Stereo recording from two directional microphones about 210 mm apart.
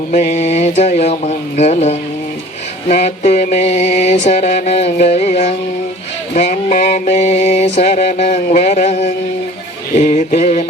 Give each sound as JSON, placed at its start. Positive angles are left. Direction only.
{"t": 0.1, "sound": "mantra", "side_deg": 35}
{"t": 3.0, "sound": "mantra", "side_deg": 30}